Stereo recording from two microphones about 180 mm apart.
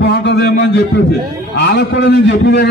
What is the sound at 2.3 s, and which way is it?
Speech, 75° left (ahead or behind).